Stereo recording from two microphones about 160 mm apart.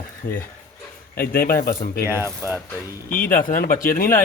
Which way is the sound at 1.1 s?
65° left (ahead or behind).